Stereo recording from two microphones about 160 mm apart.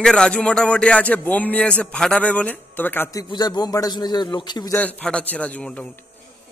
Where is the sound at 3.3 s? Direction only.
25° left (ahead or behind).